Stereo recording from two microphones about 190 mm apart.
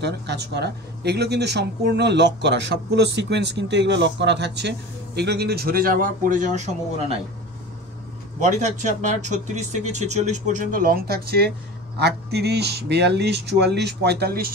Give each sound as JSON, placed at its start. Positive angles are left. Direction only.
{"t": 0.0, "sound": "speech", "side_deg": -60}
{"t": 8.4, "sound": "speech", "side_deg": -40}